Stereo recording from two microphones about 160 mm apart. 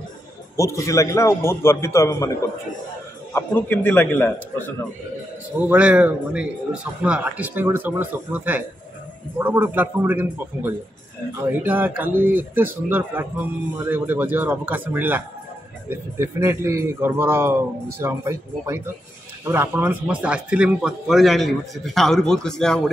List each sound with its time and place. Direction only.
0.6 s a man's voice: 20° left (ahead or behind)
3.3 s a man's voice: 10° left (ahead or behind)
5.6 s speech: 10° right (ahead or behind)